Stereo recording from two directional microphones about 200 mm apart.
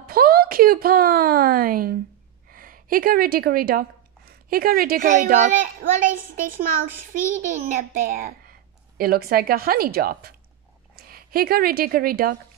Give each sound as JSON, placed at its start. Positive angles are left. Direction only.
{"t": 0.0, "sound": "a woman's voice", "side_deg": -50}